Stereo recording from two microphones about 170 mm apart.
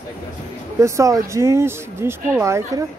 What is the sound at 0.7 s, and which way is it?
Speech, 15° right (ahead or behind).